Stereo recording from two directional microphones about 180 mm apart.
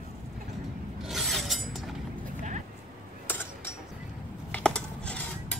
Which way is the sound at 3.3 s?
10° left (ahead or behind).